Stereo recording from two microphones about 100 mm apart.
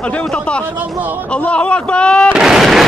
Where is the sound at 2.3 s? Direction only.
5° right (ahead or behind).